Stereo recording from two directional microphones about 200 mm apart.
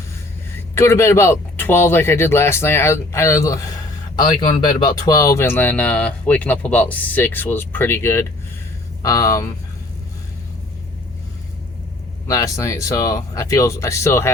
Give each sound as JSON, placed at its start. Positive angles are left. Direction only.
{"t": 0.8, "sound": "speech", "side_deg": 15}
{"t": 12.3, "sound": "speech", "side_deg": 15}